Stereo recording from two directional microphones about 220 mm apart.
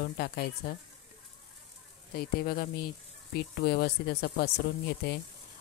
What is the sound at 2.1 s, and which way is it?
Speech, 45° left (ahead or behind).